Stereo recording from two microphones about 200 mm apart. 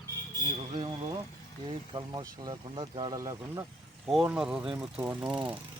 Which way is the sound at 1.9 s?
20° right (ahead or behind).